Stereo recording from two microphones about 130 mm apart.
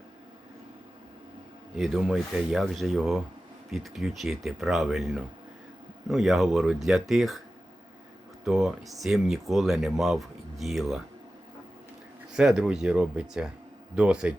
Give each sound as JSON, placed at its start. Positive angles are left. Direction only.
{"t": 1.7, "sound": "speech", "side_deg": -5}
{"t": 8.4, "sound": "speech", "side_deg": 0}
{"t": 12.3, "sound": "speech", "side_deg": -5}